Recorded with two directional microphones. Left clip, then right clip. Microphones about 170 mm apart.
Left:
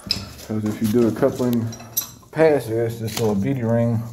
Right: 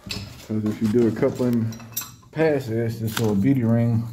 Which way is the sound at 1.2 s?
20° right (ahead or behind).